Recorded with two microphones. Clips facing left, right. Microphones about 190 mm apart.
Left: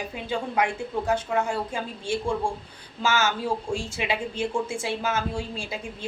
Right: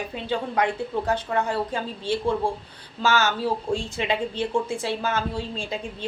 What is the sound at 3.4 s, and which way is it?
Speech, 10° left (ahead or behind).